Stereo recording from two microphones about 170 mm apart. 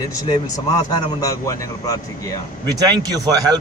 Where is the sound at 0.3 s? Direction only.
20° left (ahead or behind).